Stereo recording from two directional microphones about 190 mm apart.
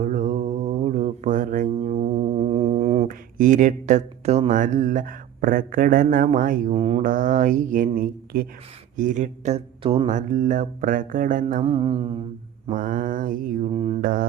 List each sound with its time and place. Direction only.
0.0 s mantra: 40° right (ahead or behind)
6.7 s speech: 30° right (ahead or behind)
7.0 s speech: 45° right (ahead or behind); by 10.1 s 30° right (ahead or behind)
10.1 s speech: 40° right (ahead or behind)
11.6 s mantra: 30° right (ahead or behind)
12.6 s speech: 45° right (ahead or behind)
13.7 s speech: 30° right (ahead or behind)
14.0 s speech: 45° right (ahead or behind)